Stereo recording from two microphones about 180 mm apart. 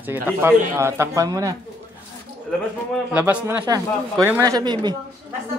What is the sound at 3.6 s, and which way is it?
Speech, 20° right (ahead or behind).